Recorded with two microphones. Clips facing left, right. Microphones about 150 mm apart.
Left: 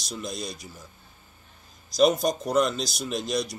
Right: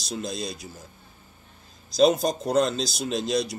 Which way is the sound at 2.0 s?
30° right (ahead or behind).